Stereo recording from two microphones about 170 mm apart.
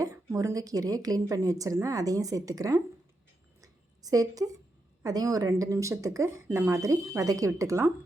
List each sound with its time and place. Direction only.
0.0 s a woman's voice: 20° right (ahead or behind)
3.6 s a sound: 20° right (ahead or behind)
5.0 s a woman's voice: 20° right (ahead or behind)